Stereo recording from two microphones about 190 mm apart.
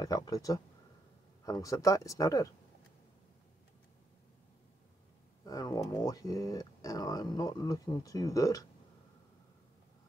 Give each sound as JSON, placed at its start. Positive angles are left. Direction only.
{"t": 0.0, "sound": "speech", "side_deg": 20}
{"t": 5.4, "sound": "speech", "side_deg": 20}